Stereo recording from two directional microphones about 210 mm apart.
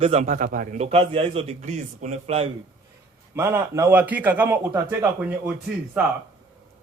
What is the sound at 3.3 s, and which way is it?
A man's voice, 10° right (ahead or behind).